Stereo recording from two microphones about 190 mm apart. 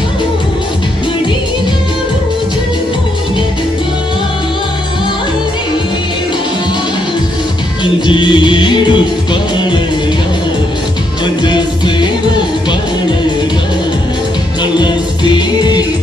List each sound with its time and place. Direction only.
7.8 s music: 25° left (ahead or behind)
11.4 s music: 25° left (ahead or behind)
14.6 s music: 25° left (ahead or behind)